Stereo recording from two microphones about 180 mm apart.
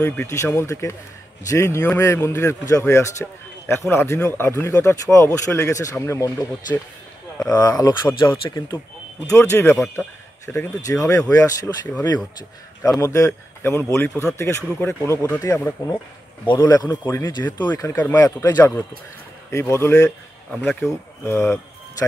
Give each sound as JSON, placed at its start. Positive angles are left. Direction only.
{"t": 0.0, "sound": "speech", "side_deg": 10}
{"t": 13.0, "sound": "speech", "side_deg": 15}
{"t": 17.6, "sound": "speech", "side_deg": 15}